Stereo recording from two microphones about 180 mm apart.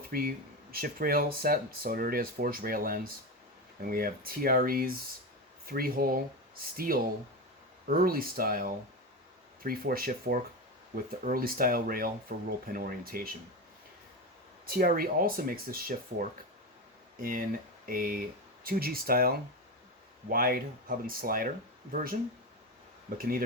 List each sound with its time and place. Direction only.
0.1 s speech: 55° right (ahead or behind)
14.8 s speech: 55° right (ahead or behind)
17.2 s speech: 50° right (ahead or behind)
23.1 s speech: 55° right (ahead or behind)